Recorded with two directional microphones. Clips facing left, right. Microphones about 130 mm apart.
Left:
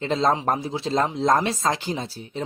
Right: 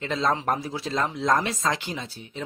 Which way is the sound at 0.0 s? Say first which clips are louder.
Left 4 dB; 30° left (ahead or behind).